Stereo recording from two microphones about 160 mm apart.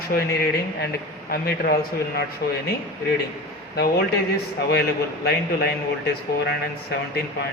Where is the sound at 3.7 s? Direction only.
75° left (ahead or behind).